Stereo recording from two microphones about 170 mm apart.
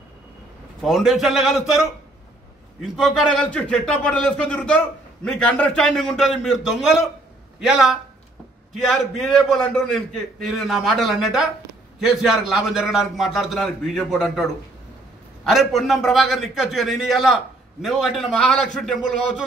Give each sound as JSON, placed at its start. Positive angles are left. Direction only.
{"t": 0.7, "sound": "a man's voice", "side_deg": 0}